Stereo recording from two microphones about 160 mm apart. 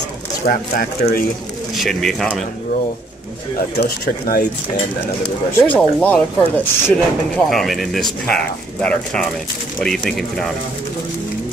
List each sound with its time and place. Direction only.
0.5 s speech: 65° left (ahead or behind)
1.8 s speech: centre (ahead or behind)
5.6 s speech: 10° left (ahead or behind)